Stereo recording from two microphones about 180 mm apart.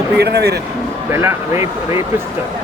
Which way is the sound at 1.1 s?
15° right (ahead or behind).